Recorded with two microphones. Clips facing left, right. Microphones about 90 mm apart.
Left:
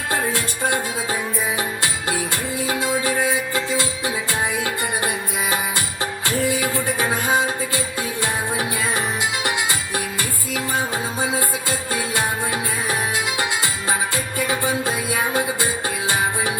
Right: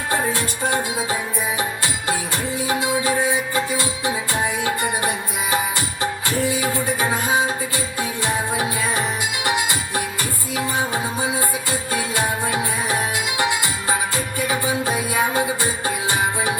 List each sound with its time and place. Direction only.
0.1 s music: 25° right (ahead or behind)
14.3 s music: 20° right (ahead or behind)